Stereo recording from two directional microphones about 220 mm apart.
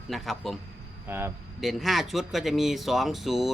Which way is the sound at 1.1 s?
10° right (ahead or behind).